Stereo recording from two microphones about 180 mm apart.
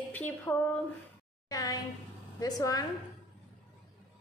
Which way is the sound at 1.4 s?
20° left (ahead or behind).